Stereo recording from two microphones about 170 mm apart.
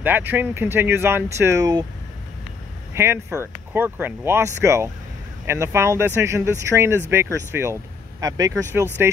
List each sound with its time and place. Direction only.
0.0 s speech: 10° right (ahead or behind)
2.9 s speech: 15° right (ahead or behind)